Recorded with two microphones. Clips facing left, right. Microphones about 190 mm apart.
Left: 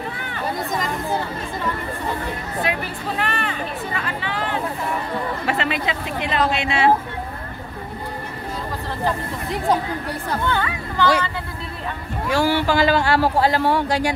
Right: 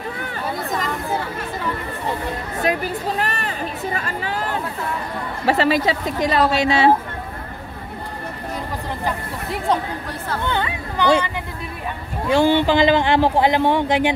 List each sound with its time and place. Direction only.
0.6 s speech: centre (ahead or behind)
2.6 s speech: 40° right (ahead or behind)
10.4 s speech: 20° right (ahead or behind)